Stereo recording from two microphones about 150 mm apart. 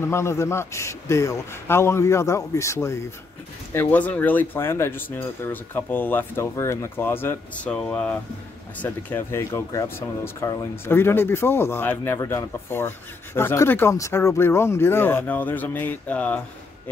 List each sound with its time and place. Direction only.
0.0 s a man's voice: 15° left (ahead or behind)